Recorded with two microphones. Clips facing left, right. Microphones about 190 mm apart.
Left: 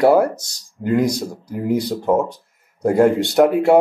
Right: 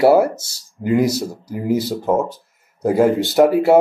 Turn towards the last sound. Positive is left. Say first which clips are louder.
# right 1 dB
turn(degrees=-5)  # may be behind; listen again after turning